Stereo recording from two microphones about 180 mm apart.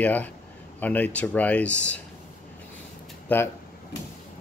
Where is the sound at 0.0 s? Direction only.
10° left (ahead or behind).